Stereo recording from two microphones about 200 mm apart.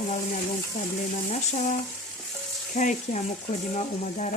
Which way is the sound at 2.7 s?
40° left (ahead or behind).